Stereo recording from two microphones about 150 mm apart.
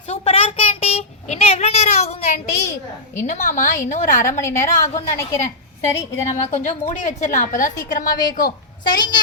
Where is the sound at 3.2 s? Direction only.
55° left (ahead or behind).